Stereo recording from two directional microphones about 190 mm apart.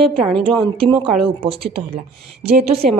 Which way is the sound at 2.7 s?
30° right (ahead or behind).